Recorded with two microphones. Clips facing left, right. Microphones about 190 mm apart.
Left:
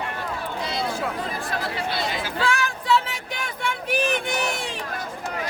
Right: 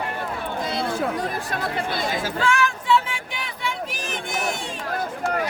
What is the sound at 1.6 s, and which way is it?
Speech, 50° right (ahead or behind).